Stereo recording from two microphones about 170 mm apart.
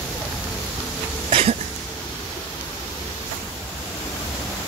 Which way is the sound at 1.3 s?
35° right (ahead or behind).